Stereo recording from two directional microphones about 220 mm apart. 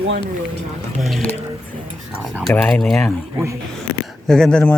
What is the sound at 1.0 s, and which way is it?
Mantra, centre (ahead or behind).